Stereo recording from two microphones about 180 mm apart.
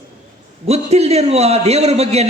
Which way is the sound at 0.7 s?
35° right (ahead or behind).